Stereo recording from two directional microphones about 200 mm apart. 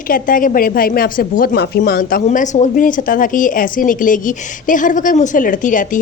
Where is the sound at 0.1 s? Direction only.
40° left (ahead or behind).